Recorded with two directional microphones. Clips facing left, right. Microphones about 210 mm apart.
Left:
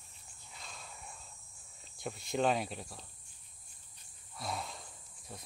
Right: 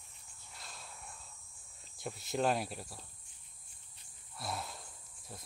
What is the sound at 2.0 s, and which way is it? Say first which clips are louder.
Speech: left 1 dB; centre (ahead or behind).